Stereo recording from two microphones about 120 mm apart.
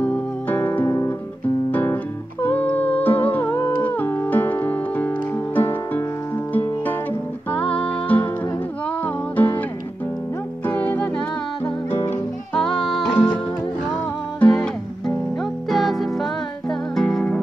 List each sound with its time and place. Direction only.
0.0 s music: 15° left (ahead or behind)
0.8 s guitar: 25° left (ahead or behind)
1.7 s guitar: 15° left (ahead or behind)
2.4 s humming: 15° left (ahead or behind)
6.5 s music: 15° left (ahead or behind)
10.6 s music: 15° left (ahead or behind)
11.9 s music: 20° left (ahead or behind)
12.5 s music: 5° left (ahead or behind)
14.4 s music: 5° left (ahead or behind)
15.7 s music: centre (ahead or behind)